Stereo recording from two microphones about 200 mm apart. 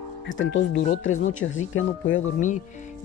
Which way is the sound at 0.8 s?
40° left (ahead or behind).